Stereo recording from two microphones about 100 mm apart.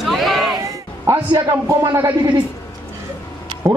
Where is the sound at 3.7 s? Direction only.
45° right (ahead or behind).